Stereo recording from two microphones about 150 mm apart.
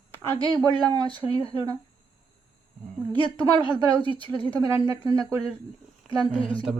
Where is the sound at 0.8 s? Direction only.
25° right (ahead or behind).